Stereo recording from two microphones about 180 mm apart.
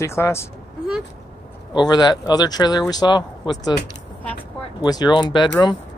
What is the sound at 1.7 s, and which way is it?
Speech, 25° left (ahead or behind).